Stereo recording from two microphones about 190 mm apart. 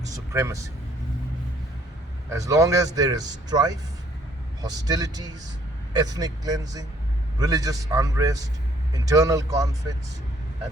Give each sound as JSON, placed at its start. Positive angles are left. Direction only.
{"t": 0.3, "sound": "speech", "side_deg": -15}
{"t": 2.3, "sound": "a man's voice", "side_deg": -15}